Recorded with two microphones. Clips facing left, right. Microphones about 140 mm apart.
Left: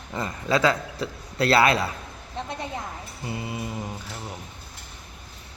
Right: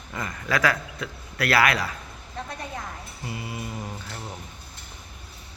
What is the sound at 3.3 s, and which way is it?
Speech, 25° left (ahead or behind).